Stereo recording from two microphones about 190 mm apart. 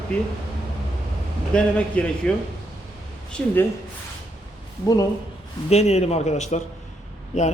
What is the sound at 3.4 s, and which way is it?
Speech, 5° left (ahead or behind).